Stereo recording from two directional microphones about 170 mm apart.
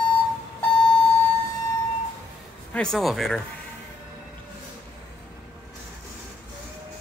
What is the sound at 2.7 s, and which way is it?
Speech, 5° left (ahead or behind).